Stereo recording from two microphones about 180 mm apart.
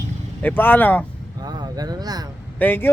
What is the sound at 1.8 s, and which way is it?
Speech, 20° right (ahead or behind).